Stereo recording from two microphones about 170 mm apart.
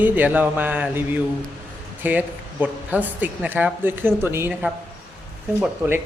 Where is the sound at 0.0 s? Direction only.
10° right (ahead or behind).